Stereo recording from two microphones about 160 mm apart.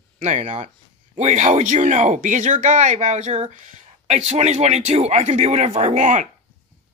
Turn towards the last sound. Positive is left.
turn(degrees=-50)  # may be behind; listen again after turning